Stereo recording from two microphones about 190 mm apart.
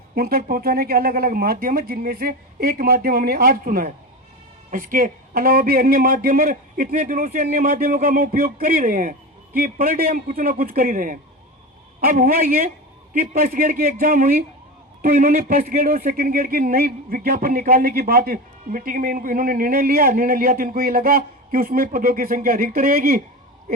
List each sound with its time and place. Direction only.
0.2 s speech: 55° right (ahead or behind)
7.0 s speech: 40° right (ahead or behind)